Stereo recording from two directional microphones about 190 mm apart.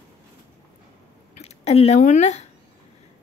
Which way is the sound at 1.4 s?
30° left (ahead or behind).